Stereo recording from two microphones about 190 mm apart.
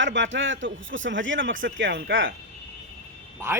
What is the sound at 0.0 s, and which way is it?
A man's voice, 75° right (ahead or behind).